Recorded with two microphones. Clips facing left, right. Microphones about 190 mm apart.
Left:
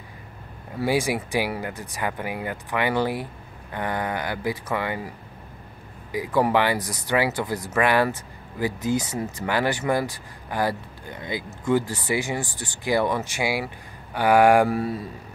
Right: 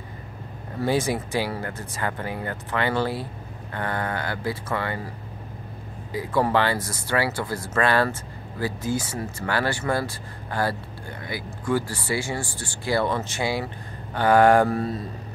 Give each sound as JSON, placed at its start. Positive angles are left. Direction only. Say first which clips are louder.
{"t": 0.7, "sound": "speech", "louder": "even", "side_deg": 10}
{"t": 6.1, "sound": "speech", "louder": "left 1 dB", "side_deg": 15}